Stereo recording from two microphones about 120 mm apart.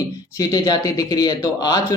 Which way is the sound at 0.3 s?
35° left (ahead or behind).